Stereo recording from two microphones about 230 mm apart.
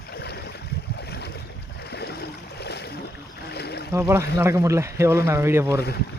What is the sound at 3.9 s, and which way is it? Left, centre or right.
Speech, centre.